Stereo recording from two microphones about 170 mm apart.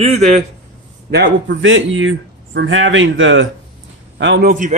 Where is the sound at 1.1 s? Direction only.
85° right.